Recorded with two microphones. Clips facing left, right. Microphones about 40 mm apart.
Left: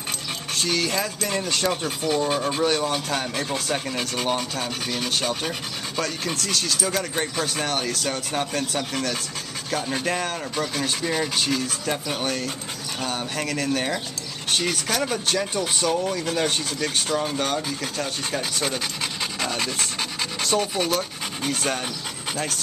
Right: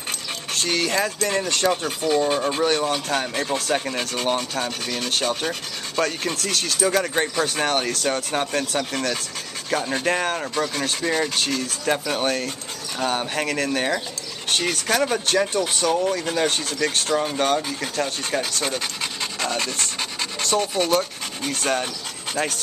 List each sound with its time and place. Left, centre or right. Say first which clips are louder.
0.7 s rub: right 3 dB; centre
1.9 s speech: right 2 dB; centre
3.7 s rub: right 4 dB; centre
4.0 s speech: right 1 dB; centre
4.4 s rub: right 2 dB; centre
8.9 s speech: right 2 dB; centre
9.7 s rub: right 3 dB; centre
10.5 s speech: right 2 dB; centre
11.8 s rub: right 4 dB; centre
14.5 s speech: right 1 dB; centre
14.9 s rub: right 3 dB; centre
16.4 s speech: right 2 dB; centre
17.2 s rub: right 3 dB; centre
19.4 s speech: right 2 dB; centre